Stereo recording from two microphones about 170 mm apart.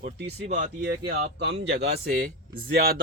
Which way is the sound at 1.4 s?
85° right.